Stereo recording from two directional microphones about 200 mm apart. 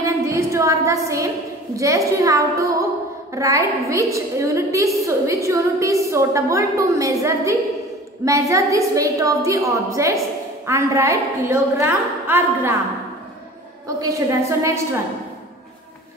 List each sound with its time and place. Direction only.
0.0 s a sound: 15° right (ahead or behind)
1.8 s a woman's voice: 15° right (ahead or behind)
14.4 s a woman's voice: 15° right (ahead or behind)